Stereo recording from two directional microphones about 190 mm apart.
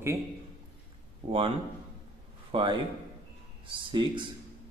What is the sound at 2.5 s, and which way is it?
Speech, 25° right (ahead or behind).